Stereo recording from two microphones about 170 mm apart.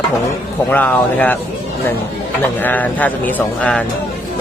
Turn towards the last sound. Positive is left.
turn(degrees=10)  # may be behind; listen again after turning